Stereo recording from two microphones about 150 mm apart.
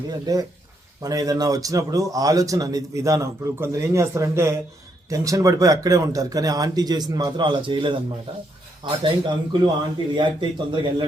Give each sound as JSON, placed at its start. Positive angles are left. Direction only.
{"t": 0.1, "sound": "a man's voice", "side_deg": -25}